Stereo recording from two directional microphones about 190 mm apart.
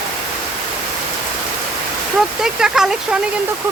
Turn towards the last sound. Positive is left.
turn(degrees=-5)  # may be behind; listen again after turning